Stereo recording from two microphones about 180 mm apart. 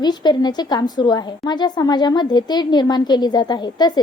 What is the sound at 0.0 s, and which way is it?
A woman's voice, 25° left (ahead or behind).